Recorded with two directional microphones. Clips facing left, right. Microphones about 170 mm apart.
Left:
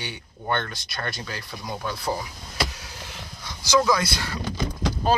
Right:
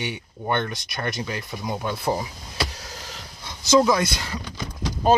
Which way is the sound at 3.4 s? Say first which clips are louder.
Right 3 dB; 25° right (ahead or behind).